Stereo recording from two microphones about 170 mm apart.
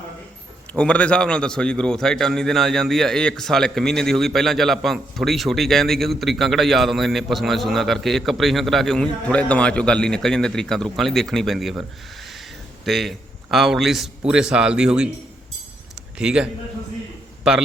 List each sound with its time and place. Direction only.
0.7 s a man's voice: 5° left (ahead or behind)
16.1 s a man's voice: 5° right (ahead or behind)